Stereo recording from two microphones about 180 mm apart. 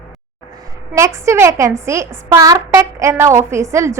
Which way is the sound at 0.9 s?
15° right (ahead or behind).